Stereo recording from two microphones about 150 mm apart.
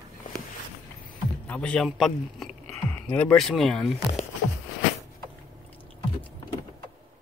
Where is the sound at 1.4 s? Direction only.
10° left (ahead or behind).